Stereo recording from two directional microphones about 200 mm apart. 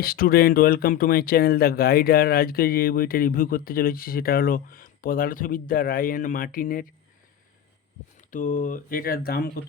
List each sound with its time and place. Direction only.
0.0 s speech: 50° left (ahead or behind)
8.3 s speech: 40° left (ahead or behind)